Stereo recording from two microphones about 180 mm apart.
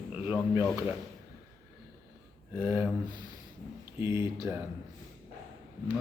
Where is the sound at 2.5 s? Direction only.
15° right (ahead or behind).